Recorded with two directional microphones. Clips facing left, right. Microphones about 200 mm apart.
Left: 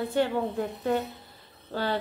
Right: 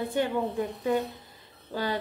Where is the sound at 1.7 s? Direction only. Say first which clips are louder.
Left 1 dB; 15° right (ahead or behind).